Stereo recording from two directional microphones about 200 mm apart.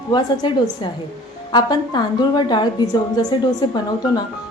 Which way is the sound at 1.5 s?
20° left (ahead or behind).